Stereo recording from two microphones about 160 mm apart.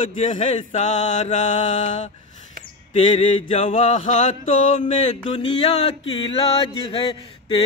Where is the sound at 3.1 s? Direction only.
40° left (ahead or behind).